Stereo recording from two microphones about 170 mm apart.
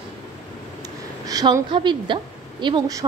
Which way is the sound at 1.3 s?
20° right (ahead or behind).